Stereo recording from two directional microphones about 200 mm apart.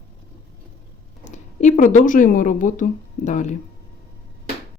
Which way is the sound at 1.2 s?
35° left (ahead or behind).